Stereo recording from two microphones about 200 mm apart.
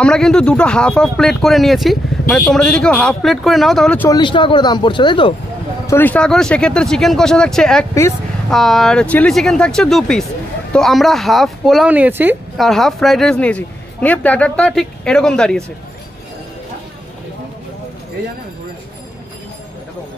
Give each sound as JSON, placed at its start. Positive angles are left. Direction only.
{"t": 0.0, "sound": "speech", "side_deg": 5}
{"t": 4.1, "sound": "speech", "side_deg": 25}
{"t": 5.9, "sound": "speech", "side_deg": 10}
{"t": 12.5, "sound": "speech", "side_deg": 0}